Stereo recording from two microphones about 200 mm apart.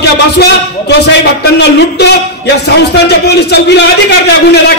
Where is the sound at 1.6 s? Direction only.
55° left (ahead or behind).